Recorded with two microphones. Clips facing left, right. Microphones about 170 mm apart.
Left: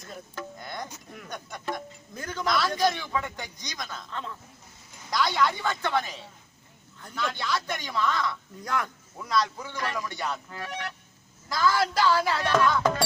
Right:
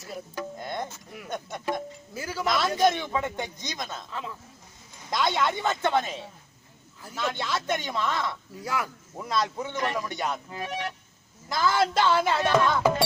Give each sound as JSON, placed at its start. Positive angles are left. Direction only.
{"t": 0.0, "sound": "speech", "side_deg": -10}
{"t": 0.6, "sound": "music", "side_deg": -25}
{"t": 1.3, "sound": "speech", "side_deg": -25}
{"t": 2.1, "sound": "speech", "side_deg": -5}
{"t": 2.4, "sound": "speech", "side_deg": -25}
{"t": 4.1, "sound": "speech", "side_deg": -5}
{"t": 5.1, "sound": "speech", "side_deg": -25}
{"t": 8.5, "sound": "speech", "side_deg": -5}
{"t": 9.1, "sound": "speech", "side_deg": -25}